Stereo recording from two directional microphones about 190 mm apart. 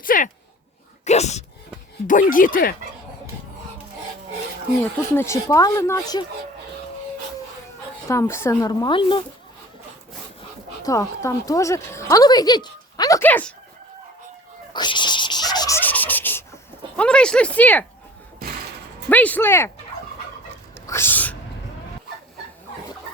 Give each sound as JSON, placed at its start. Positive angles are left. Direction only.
{"t": 0.0, "sound": "a sound", "side_deg": 45}
{"t": 1.0, "sound": "speech", "side_deg": 35}
{"t": 2.3, "sound": "speech", "side_deg": 45}
{"t": 4.8, "sound": "speech", "side_deg": 15}
{"t": 8.0, "sound": "speech", "side_deg": 15}
{"t": 10.8, "sound": "a woman's voice", "side_deg": 15}
{"t": 14.7, "sound": "turkey", "side_deg": 25}
{"t": 17.0, "sound": "speech", "side_deg": 5}
{"t": 19.0, "sound": "speech", "side_deg": 10}
{"t": 20.8, "sound": "a sound", "side_deg": 15}